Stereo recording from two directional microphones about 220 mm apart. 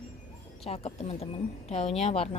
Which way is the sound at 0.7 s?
25° left (ahead or behind).